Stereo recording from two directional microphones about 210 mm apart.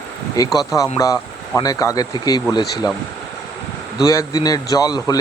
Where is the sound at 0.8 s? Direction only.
15° left (ahead or behind).